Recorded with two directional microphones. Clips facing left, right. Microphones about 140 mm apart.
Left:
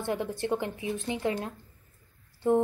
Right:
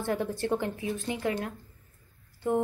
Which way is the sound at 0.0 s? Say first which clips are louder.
Right 1 dB; 20° left (ahead or behind).